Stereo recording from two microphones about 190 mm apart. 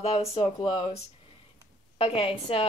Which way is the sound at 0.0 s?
35° left (ahead or behind).